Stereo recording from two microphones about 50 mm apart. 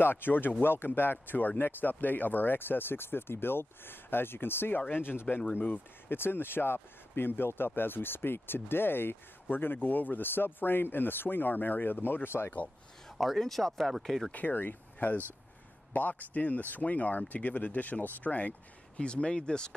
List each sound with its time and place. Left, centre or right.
0.0 s speech: left
5.4 s speech: left
6.0 s speech: left
13.2 s speech: centre
14.3 s speech: left
18.9 s speech: left